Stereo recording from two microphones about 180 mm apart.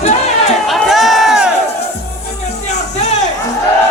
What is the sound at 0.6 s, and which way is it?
Crowd, centre (ahead or behind).